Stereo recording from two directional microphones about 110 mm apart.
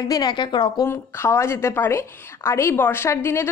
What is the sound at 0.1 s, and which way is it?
Speech, 40° left (ahead or behind).